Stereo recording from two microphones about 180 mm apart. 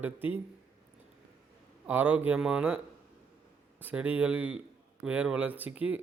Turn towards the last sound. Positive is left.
turn(degrees=-10)  # may be behind; listen again after turning